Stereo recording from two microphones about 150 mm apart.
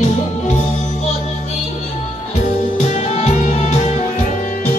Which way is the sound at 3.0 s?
45° left (ahead or behind).